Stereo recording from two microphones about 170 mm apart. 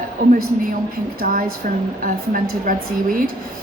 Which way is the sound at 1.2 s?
60° right (ahead or behind).